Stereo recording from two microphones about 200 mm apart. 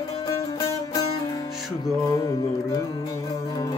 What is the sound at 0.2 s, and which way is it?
Music, 15° left (ahead or behind).